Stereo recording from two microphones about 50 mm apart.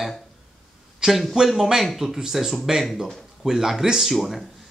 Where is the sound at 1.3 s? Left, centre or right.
Centre.